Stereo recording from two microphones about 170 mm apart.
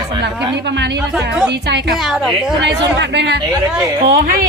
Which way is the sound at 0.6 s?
90° right.